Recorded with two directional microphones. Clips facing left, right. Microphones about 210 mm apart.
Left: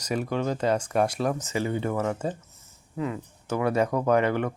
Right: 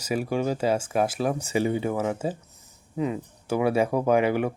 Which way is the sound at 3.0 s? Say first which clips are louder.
Right 3 dB; 20° right (ahead or behind).